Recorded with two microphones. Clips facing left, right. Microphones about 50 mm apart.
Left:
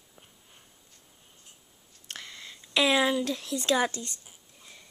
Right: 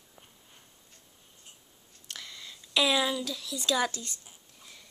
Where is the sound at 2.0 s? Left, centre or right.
Left.